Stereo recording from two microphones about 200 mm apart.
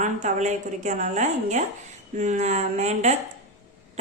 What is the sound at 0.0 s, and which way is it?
A woman's voice, 35° right (ahead or behind).